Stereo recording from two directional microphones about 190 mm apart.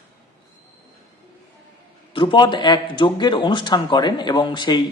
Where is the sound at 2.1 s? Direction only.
25° left (ahead or behind).